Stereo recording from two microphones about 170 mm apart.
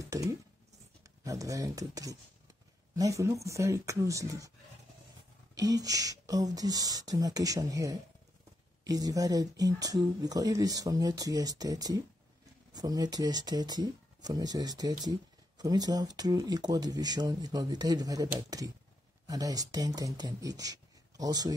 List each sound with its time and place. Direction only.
0.0 s speech: 20° right (ahead or behind)
5.5 s speech: 20° right (ahead or behind)